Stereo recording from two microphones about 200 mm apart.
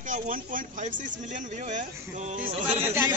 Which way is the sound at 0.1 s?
45° right (ahead or behind).